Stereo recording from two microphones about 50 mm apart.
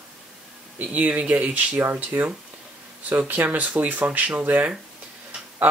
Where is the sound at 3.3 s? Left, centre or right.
Right.